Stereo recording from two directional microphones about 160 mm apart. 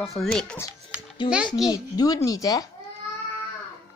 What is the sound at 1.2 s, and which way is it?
A child's voice, 30° left (ahead or behind).